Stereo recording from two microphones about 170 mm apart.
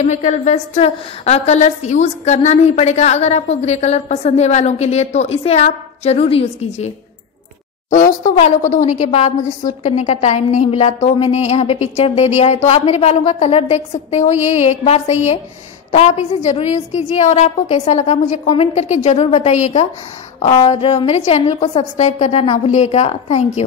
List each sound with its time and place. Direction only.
0.0 s a woman's voice: 45° left (ahead or behind)
7.9 s a woman's voice: 50° left (ahead or behind)